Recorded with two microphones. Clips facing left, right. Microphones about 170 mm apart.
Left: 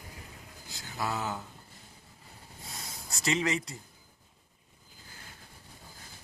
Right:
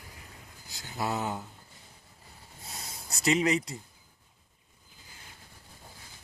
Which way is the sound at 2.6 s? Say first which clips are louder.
Right 1 dB; 25° right (ahead or behind).